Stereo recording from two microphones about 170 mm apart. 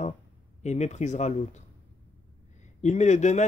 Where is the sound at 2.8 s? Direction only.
45° left (ahead or behind).